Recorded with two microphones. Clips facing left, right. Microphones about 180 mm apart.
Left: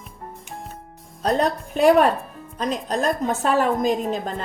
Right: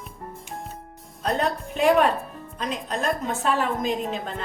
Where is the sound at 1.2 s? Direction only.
40° left (ahead or behind).